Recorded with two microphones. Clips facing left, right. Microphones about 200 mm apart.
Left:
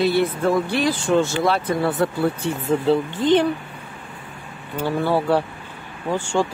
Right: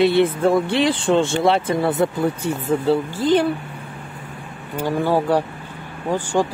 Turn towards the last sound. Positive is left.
turn(degrees=-15)  # may be behind; listen again after turning